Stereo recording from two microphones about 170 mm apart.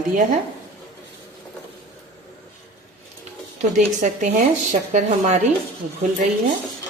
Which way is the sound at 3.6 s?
50° right (ahead or behind).